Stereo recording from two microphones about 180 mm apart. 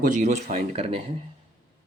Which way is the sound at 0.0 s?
45° right (ahead or behind).